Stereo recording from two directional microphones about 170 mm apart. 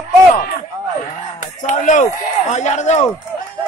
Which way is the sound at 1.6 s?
45° left (ahead or behind).